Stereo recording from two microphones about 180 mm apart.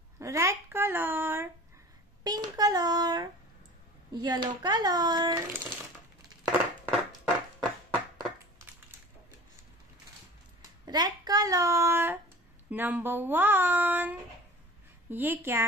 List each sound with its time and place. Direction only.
0.2 s speech: 15° right (ahead or behind)
6.4 s a sound: 5° right (ahead or behind)
10.9 s speech: 25° right (ahead or behind)